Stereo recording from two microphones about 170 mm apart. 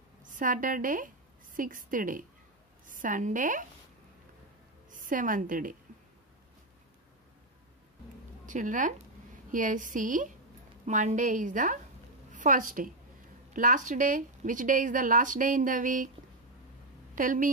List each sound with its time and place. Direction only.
0.2 s a woman's voice: 50° right (ahead or behind)
4.9 s a woman's voice: 50° right (ahead or behind)
8.5 s a woman's voice: 50° right (ahead or behind)
17.1 s a woman's voice: 50° right (ahead or behind)